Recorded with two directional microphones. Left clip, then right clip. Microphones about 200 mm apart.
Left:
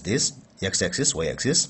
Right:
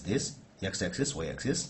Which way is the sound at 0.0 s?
45° left (ahead or behind).